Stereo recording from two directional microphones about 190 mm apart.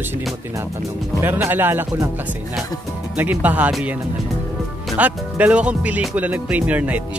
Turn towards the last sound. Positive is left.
turn(degrees=-5)  # may be behind; listen again after turning